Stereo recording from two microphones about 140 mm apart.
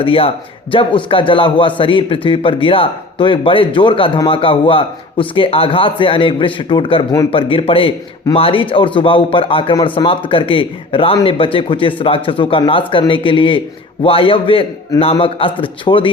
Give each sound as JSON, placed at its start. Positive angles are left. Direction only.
{"t": 0.0, "sound": "a man's voice", "side_deg": 40}